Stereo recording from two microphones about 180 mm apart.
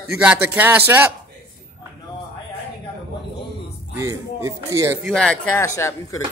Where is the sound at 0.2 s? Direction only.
10° right (ahead or behind).